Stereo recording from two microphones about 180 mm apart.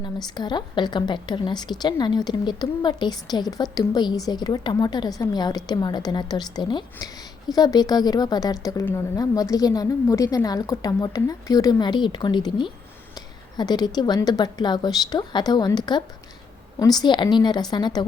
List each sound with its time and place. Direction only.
0.3 s a woman's voice: 25° left (ahead or behind)